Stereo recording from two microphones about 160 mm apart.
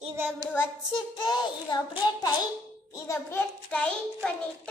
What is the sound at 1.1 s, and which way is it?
Child singing, 25° left (ahead or behind).